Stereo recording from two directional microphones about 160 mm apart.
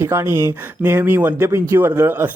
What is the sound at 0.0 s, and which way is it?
Speech, 15° right (ahead or behind).